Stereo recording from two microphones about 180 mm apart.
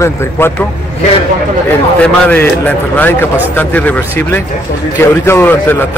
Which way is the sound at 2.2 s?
10° left (ahead or behind).